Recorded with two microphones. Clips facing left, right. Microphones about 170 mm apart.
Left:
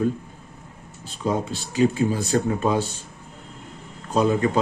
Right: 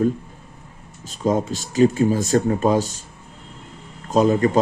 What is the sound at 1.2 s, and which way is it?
Speech, 40° right (ahead or behind).